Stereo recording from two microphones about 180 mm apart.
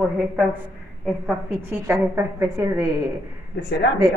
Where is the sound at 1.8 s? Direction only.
15° right (ahead or behind).